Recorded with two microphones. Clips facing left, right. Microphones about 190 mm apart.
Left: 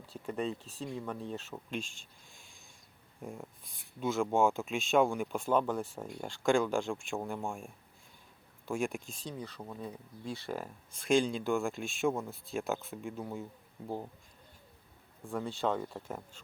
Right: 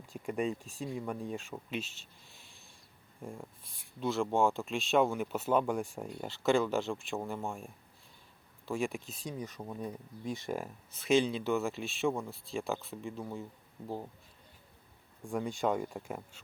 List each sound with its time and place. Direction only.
0.0 s speech: 10° right (ahead or behind)
9.2 s speech: 10° right (ahead or behind)
15.3 s speech: 15° right (ahead or behind)